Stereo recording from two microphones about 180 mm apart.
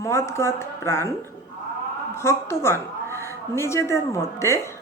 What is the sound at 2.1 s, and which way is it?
A woman's voice, 15° left (ahead or behind).